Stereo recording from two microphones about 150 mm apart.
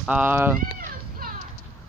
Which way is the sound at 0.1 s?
15° right (ahead or behind).